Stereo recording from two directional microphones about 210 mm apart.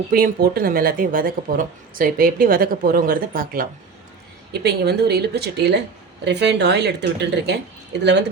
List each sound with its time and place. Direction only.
0.1 s speech: 45° right (ahead or behind)